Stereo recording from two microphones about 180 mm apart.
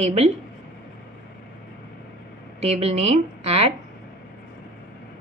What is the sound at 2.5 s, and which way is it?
A woman's voice, 35° right (ahead or behind).